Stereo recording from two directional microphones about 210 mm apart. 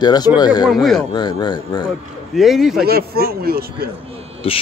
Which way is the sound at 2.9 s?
45° right (ahead or behind).